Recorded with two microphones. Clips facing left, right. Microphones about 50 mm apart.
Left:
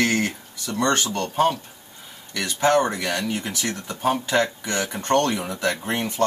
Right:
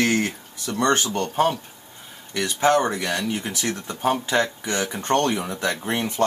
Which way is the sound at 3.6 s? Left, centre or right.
Right.